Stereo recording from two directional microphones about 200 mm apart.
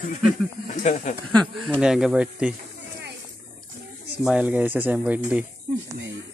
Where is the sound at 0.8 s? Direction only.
35° left (ahead or behind).